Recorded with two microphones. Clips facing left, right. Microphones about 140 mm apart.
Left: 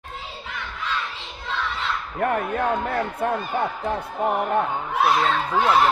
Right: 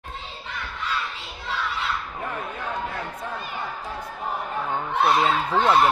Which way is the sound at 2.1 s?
60° left (ahead or behind).